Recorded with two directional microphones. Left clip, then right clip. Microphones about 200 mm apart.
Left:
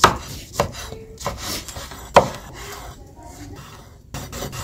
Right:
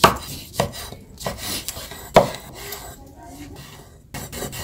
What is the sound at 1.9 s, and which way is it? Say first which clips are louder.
Chopping: left 1 dB; 20° left (ahead or behind).